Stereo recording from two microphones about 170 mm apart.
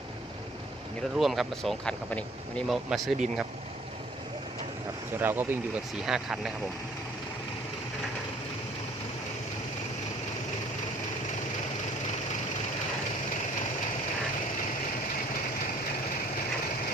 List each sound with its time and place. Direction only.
1.2 s speech: centre (ahead or behind)
5.2 s speech: 10° right (ahead or behind)